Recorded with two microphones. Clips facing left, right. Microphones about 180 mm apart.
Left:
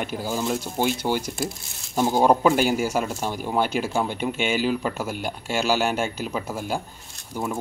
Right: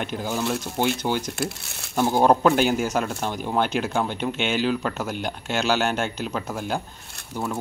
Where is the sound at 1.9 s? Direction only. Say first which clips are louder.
Even; 10° left (ahead or behind).